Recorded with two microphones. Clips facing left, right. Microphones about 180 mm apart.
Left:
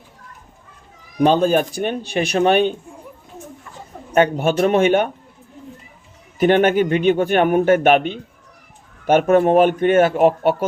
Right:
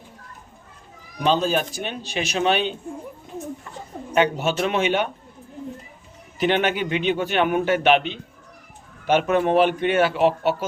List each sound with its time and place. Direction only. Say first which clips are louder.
1.2 s a man's voice: left 6 dB; 50° left (ahead or behind)
4.1 s a man's voice: left 4 dB; 50° left (ahead or behind)
6.4 s a man's voice: left 7 dB; 50° left (ahead or behind)